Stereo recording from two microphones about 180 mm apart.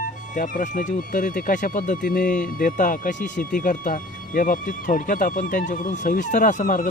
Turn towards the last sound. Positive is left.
turn(degrees=50)  # may be behind; listen again after turning